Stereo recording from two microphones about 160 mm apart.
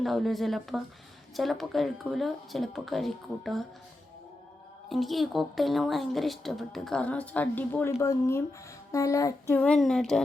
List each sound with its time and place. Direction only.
0.0 s a woman's voice: centre (ahead or behind)
4.9 s a woman's voice: centre (ahead or behind); by 8.4 s 20° left (ahead or behind)
8.9 s child singing: 20° left (ahead or behind)
9.6 s a woman's voice: 5° left (ahead or behind)